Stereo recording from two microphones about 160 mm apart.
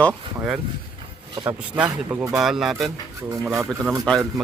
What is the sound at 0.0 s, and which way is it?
Speech, centre (ahead or behind).